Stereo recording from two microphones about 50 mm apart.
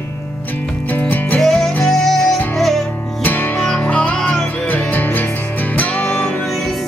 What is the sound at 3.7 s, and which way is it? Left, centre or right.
Music, left.